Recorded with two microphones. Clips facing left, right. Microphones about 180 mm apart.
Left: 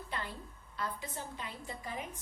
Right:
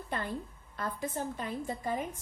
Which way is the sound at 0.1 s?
50° right (ahead or behind).